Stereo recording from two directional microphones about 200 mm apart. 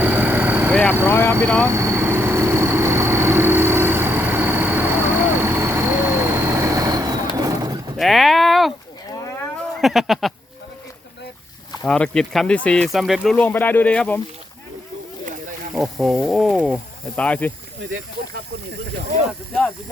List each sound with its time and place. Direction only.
0.0 s vehicle: 10° right (ahead or behind)
0.7 s vehicle: 5° left (ahead or behind)
1.0 s speech: 10° left (ahead or behind)
1.7 s vehicle: 15° right (ahead or behind)
7.3 s pigeon: 20° right (ahead or behind)
7.9 s a sound: centre (ahead or behind)
9.8 s speech: centre (ahead or behind)
11.9 s speech: 5° left (ahead or behind)
15.7 s speech: centre (ahead or behind)